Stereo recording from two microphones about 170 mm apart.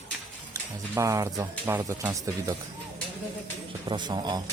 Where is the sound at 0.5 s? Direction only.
20° right (ahead or behind).